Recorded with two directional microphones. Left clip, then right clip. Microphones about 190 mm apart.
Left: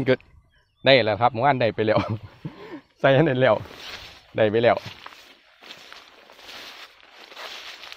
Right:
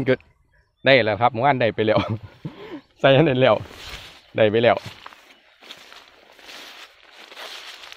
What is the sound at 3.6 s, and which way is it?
Speech, 5° right (ahead or behind).